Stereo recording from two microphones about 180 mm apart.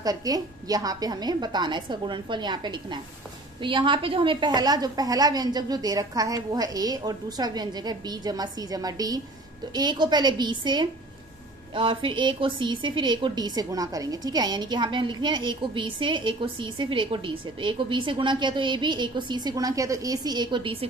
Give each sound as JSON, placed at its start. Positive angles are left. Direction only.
{"t": 0.0, "sound": "a woman's voice", "side_deg": -20}